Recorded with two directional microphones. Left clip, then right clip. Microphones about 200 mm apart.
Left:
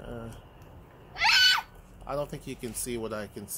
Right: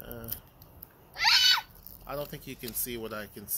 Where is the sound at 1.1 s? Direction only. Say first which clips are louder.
Left 1 dB; 55° left (ahead or behind).